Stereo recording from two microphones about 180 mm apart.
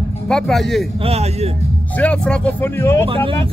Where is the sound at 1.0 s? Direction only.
35° right (ahead or behind).